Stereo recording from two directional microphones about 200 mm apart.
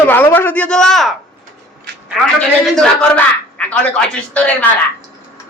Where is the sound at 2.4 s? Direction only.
Centre (ahead or behind).